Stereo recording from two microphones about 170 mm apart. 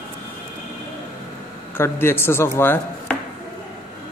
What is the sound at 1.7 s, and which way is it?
A man's voice, 15° left (ahead or behind).